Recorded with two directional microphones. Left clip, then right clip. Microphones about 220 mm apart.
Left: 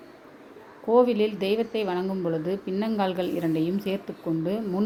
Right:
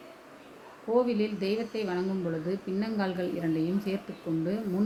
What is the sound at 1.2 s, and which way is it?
A woman's voice, 25° left (ahead or behind).